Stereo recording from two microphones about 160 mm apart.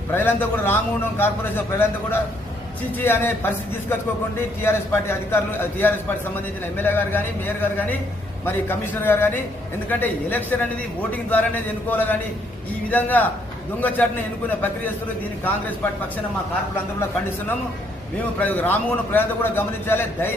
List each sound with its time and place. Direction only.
0.1 s a man's voice: 15° left (ahead or behind)
15.4 s a man's voice: 10° left (ahead or behind)
18.4 s a man's voice: 10° left (ahead or behind)